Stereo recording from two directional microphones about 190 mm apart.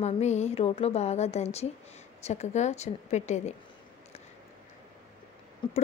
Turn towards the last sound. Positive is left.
turn(degrees=25)  # may be behind; listen again after turning